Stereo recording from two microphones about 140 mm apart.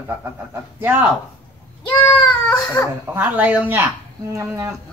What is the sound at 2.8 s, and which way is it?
Speech, 15° left (ahead or behind).